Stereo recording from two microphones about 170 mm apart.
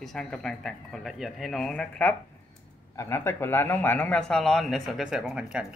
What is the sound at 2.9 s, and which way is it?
Speech, 15° left (ahead or behind).